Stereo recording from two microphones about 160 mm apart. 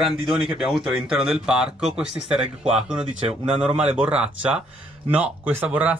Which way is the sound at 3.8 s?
5° right (ahead or behind).